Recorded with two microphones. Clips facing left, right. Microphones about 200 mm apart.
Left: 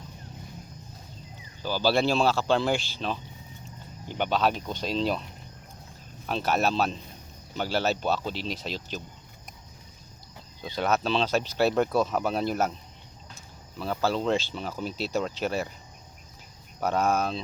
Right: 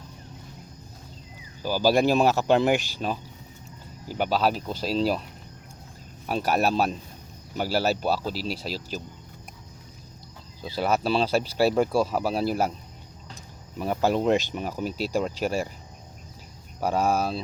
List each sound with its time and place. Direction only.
1.6 s speech: 10° right (ahead or behind)
6.2 s speech: 10° right (ahead or behind)
10.6 s speech: 5° right (ahead or behind)
13.7 s speech: 15° right (ahead or behind)
16.8 s speech: 10° right (ahead or behind)